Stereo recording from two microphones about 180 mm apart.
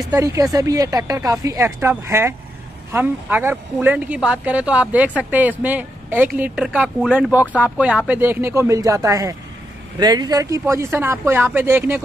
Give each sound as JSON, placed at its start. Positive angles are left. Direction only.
{"t": 0.1, "sound": "speech", "side_deg": -20}